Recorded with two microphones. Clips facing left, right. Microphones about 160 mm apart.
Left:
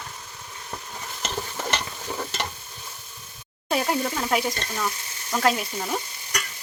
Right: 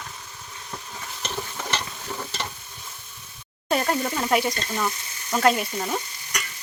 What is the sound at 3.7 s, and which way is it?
Speech, centre (ahead or behind).